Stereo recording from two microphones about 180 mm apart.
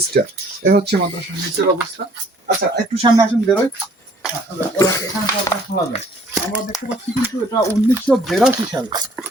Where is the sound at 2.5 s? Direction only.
35° right (ahead or behind).